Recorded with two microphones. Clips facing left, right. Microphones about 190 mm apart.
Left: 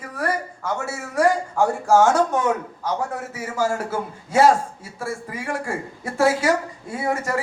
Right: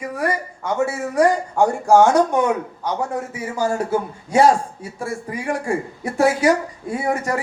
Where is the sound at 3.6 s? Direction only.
15° right (ahead or behind).